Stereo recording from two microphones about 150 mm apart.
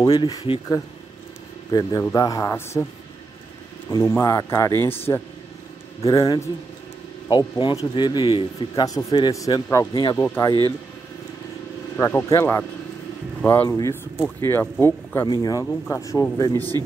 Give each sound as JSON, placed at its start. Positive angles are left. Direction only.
{"t": 0.0, "sound": "a man's voice", "side_deg": 30}
{"t": 4.2, "sound": "a man's voice", "side_deg": 20}
{"t": 6.0, "sound": "a man's voice", "side_deg": 25}
{"t": 12.0, "sound": "speech", "side_deg": 15}
{"t": 15.2, "sound": "a man's voice", "side_deg": 25}